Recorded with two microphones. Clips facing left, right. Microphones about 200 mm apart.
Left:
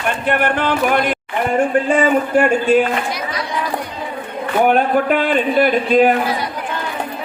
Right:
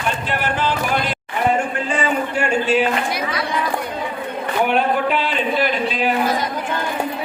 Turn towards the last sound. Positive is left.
turn(degrees=50)  # may be behind; listen again after turning